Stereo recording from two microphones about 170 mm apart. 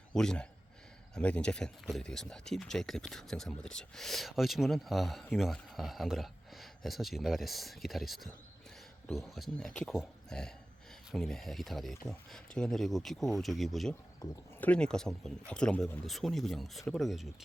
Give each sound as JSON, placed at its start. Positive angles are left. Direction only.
{"t": 0.1, "sound": "speech", "side_deg": 5}
{"t": 14.2, "sound": "speech", "side_deg": 20}
{"t": 14.6, "sound": "speech", "side_deg": 5}